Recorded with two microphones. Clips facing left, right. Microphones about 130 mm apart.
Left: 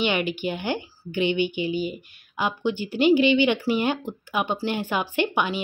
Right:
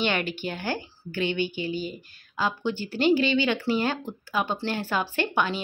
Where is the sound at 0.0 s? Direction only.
10° left (ahead or behind).